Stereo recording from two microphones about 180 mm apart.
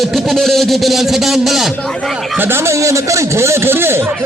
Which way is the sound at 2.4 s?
15° right (ahead or behind).